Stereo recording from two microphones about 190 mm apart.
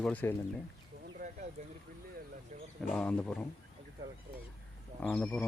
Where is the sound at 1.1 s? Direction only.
40° right (ahead or behind).